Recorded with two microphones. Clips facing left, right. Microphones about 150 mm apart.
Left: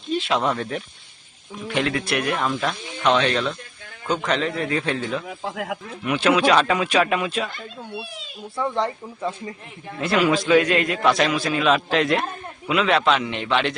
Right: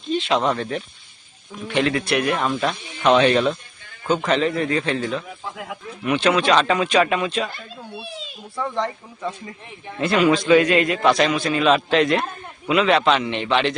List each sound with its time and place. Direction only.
0.1 s a man's voice: 5° left (ahead or behind); by 3.5 s 15° right (ahead or behind)
4.3 s a man's voice: centre (ahead or behind)
5.5 s speech: 75° left (ahead or behind)
6.1 s a man's voice: 5° left (ahead or behind)
10.0 s a man's voice: centre (ahead or behind)